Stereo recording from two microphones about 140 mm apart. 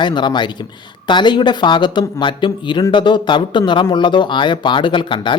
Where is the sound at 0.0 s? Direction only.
30° left (ahead or behind).